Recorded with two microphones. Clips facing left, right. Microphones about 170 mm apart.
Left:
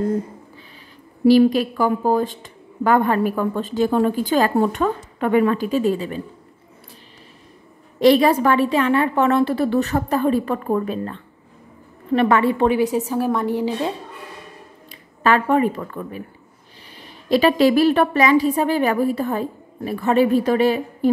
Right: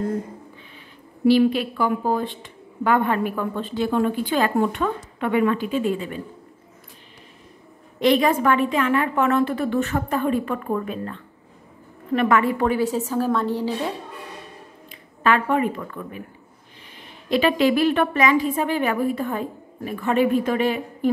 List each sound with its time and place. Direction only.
1.2 s a woman's voice: 40° left (ahead or behind)
8.0 s a woman's voice: 35° left (ahead or behind); by 13.9 s 15° left (ahead or behind)
14.9 s a woman's voice: 35° left (ahead or behind)